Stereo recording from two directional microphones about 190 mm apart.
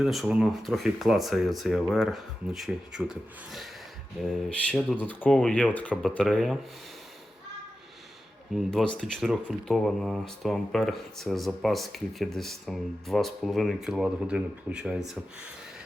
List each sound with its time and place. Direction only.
0.0 s speech: centre (ahead or behind)
8.5 s speech: 5° left (ahead or behind)